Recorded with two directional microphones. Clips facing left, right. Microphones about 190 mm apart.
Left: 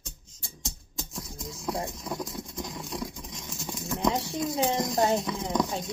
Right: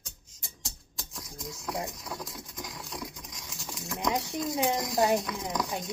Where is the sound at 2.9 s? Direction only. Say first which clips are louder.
Left 5 dB; 30° left (ahead or behind).